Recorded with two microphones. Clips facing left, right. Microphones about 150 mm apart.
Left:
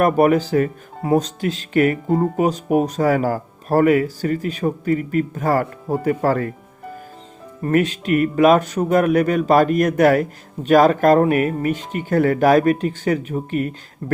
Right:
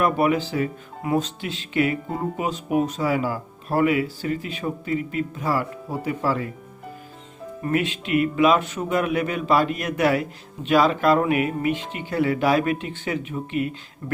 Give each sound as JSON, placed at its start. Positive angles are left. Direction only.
{"t": 0.0, "sound": "speech", "side_deg": 45}
{"t": 7.6, "sound": "speech", "side_deg": 45}